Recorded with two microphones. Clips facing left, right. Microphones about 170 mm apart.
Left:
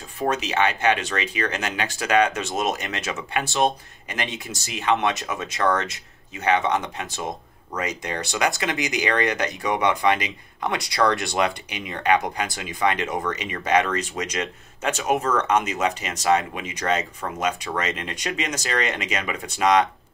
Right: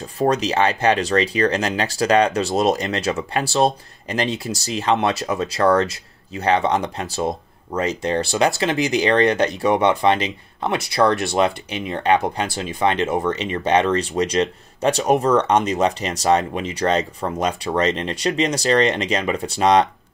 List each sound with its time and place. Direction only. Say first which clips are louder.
0.2 s speech: right 5 dB; 35° right (ahead or behind)
12.4 s speech: right 6 dB; 20° left (ahead or behind)
12.7 s speech: right 4 dB; 25° right (ahead or behind)